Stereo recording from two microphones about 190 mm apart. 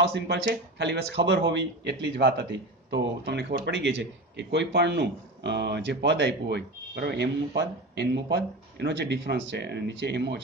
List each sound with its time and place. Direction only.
0.0 s a man's voice: 65° right (ahead or behind)